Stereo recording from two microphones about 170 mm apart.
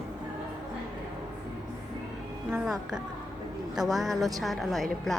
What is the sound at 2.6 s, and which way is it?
A woman's voice, 5° right (ahead or behind).